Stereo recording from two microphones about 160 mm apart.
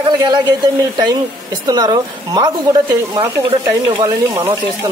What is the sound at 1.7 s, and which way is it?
A woman's voice, 25° right (ahead or behind).